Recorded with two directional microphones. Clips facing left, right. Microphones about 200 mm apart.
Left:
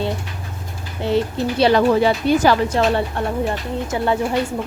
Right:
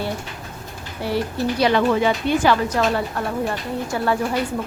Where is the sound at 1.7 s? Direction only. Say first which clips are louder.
Left 3 dB; 35° left (ahead or behind).